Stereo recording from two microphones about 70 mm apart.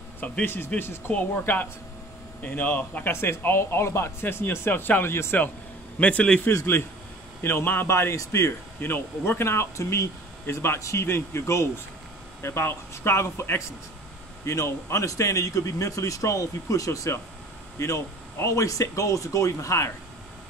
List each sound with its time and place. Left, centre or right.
0.2 s a man's voice: left
0.7 s a man's voice: left
3.1 s speech: left
5.9 s a man's voice: centre
6.4 s speech: left
7.9 s speech: left
8.8 s speech: left